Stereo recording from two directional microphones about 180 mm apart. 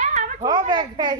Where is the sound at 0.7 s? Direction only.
20° right (ahead or behind).